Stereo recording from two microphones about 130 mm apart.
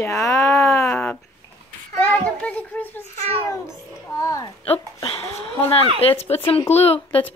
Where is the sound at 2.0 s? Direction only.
10° left (ahead or behind).